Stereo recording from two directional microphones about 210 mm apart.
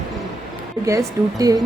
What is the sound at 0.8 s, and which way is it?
Speech, 15° right (ahead or behind).